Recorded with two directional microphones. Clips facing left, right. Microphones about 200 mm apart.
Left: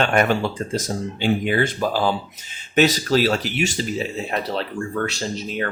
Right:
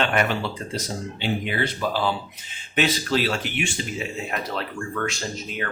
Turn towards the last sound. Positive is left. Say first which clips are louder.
# left 5 dB
turn(degrees=35)  # may be behind; listen again after turning